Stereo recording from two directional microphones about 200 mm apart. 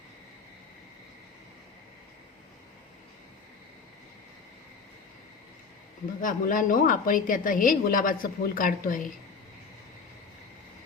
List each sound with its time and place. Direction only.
6.2 s a woman's voice: 40° left (ahead or behind)